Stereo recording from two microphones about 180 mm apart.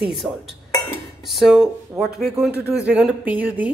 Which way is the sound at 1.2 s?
Centre (ahead or behind).